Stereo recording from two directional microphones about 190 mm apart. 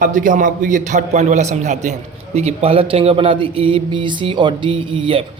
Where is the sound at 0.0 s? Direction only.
45° right (ahead or behind).